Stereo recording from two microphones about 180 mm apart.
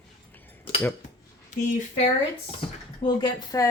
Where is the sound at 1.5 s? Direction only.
40° left (ahead or behind).